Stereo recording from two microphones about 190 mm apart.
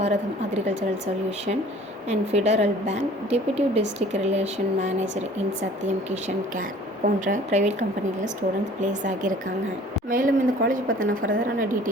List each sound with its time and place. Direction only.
0.0 s a woman's voice: 35° right (ahead or behind)
2.0 s a woman's voice: 35° right (ahead or behind)
7.0 s a woman's voice: 40° right (ahead or behind)